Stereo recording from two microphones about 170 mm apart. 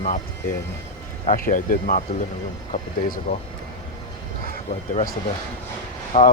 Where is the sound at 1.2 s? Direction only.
55° left (ahead or behind).